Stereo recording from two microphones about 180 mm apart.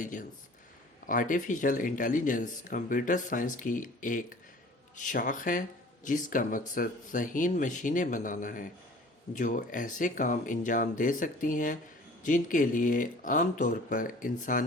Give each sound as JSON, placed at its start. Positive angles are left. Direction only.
{"t": 0.0, "sound": "speech", "side_deg": 45}